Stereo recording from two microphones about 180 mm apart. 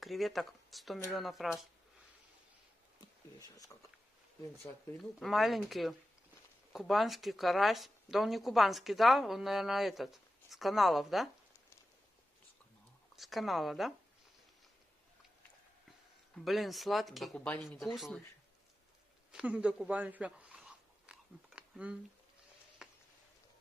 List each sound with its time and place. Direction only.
0.0 s speech: centre (ahead or behind)
3.3 s speech: 20° left (ahead or behind)
5.2 s speech: centre (ahead or behind)
13.1 s speech: centre (ahead or behind)
16.4 s speech: centre (ahead or behind)
19.3 s a sound: 5° right (ahead or behind)